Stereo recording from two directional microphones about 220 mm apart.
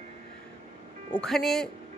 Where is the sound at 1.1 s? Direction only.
Centre (ahead or behind).